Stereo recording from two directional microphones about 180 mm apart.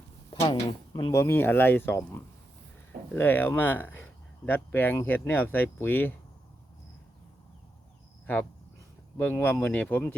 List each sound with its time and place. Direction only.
0.3 s a sound: 30° left (ahead or behind)
0.9 s speech: 20° left (ahead or behind)
9.1 s speech: 10° left (ahead or behind)